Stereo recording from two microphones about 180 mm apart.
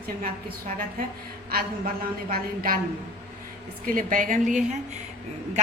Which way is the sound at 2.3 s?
50° right (ahead or behind).